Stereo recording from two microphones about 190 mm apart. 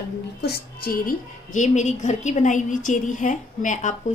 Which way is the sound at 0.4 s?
50° left (ahead or behind).